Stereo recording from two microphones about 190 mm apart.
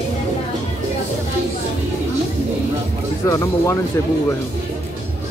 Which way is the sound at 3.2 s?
15° left (ahead or behind).